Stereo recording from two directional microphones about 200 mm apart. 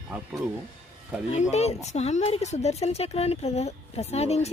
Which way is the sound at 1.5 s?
35° left (ahead or behind).